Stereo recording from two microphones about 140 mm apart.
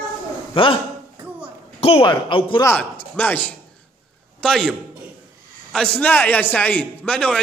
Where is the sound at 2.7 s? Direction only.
10° left (ahead or behind).